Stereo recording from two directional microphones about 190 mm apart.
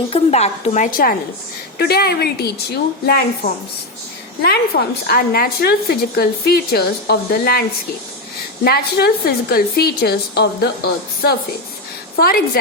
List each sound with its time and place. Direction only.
0.1 s a woman's voice: 35° left (ahead or behind); by 7.6 s 55° left (ahead or behind)
8.6 s a woman's voice: 55° left (ahead or behind)